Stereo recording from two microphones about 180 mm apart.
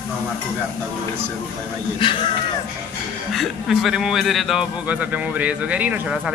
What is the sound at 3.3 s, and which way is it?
A man's voice, centre (ahead or behind).